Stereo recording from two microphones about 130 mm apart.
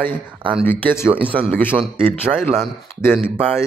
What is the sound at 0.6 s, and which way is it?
Speech, 15° left (ahead or behind).